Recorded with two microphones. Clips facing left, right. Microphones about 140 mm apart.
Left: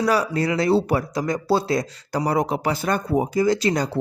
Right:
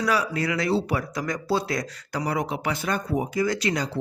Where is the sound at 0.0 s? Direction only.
35° left (ahead or behind).